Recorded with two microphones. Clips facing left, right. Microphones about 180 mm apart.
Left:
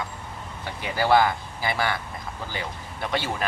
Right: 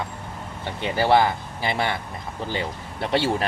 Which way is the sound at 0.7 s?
25° right (ahead or behind).